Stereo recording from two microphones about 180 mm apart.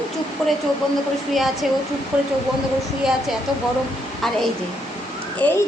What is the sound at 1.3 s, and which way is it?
Speech, centre (ahead or behind).